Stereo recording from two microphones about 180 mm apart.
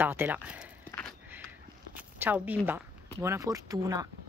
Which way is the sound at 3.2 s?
15° right (ahead or behind).